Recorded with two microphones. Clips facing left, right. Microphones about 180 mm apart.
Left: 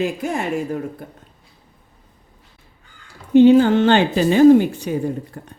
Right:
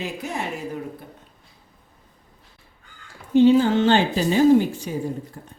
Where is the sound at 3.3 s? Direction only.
60° left (ahead or behind).